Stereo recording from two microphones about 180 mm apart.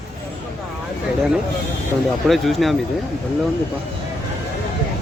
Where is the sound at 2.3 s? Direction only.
Centre (ahead or behind).